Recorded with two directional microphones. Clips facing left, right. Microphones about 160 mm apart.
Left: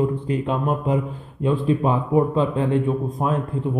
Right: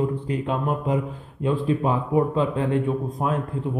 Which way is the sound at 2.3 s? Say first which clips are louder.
Left 2 dB; 25° left (ahead or behind).